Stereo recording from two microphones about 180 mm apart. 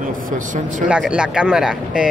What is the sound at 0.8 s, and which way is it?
Speech, 5° right (ahead or behind).